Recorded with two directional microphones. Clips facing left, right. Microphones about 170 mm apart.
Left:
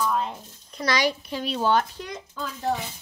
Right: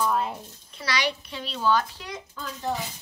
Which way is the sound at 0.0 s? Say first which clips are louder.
Even; 5° right (ahead or behind).